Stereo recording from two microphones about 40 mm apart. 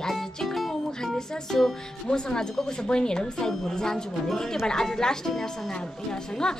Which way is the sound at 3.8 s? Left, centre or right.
Centre.